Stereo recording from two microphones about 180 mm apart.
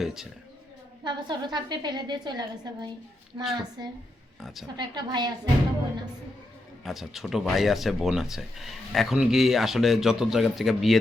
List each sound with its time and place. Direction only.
0.0 s speech: centre (ahead or behind)
1.0 s a woman's voice: 25° right (ahead or behind)
6.8 s speech: centre (ahead or behind)